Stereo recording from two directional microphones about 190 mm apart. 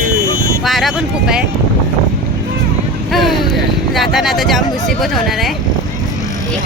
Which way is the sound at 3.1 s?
Centre (ahead or behind).